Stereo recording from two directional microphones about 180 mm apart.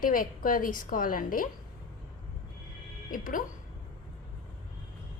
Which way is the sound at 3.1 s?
50° left (ahead or behind).